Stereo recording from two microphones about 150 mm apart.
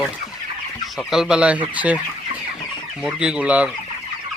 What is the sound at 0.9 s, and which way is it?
Speech, 5° right (ahead or behind).